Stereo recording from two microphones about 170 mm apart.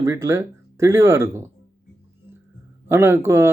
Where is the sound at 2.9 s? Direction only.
15° right (ahead or behind).